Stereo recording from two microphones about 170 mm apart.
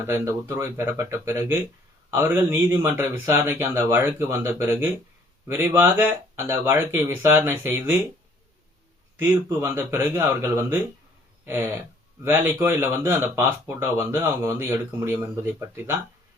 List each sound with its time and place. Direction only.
0.0 s speech: 15° right (ahead or behind)
9.1 s speech: 15° right (ahead or behind)